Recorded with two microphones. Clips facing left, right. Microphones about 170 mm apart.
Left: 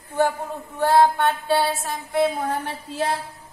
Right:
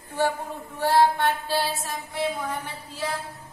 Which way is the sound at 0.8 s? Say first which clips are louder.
Left 3 dB; 55° left (ahead or behind).